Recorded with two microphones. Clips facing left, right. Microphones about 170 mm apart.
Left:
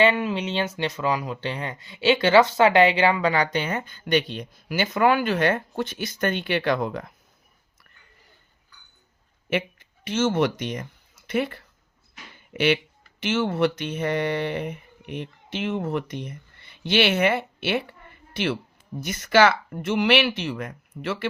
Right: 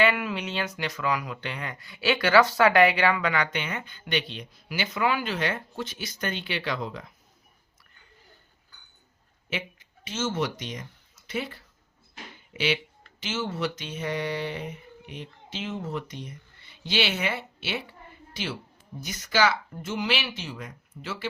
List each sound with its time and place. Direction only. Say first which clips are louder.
0.0 s speech: left 4 dB; 25° left (ahead or behind); by 7.1 s 55° left (ahead or behind)
9.5 s speech: left 9 dB; 55° left (ahead or behind)
19.0 s speech: left 6 dB; 60° left (ahead or behind)